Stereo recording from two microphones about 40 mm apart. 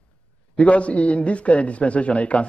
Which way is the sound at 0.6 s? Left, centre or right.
Left.